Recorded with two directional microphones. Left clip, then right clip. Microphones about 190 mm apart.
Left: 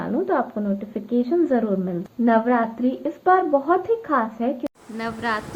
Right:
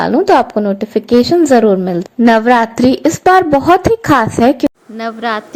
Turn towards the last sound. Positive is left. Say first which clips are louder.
# right 8 dB
turn(degrees=-35)  # may be behind; listen again after turning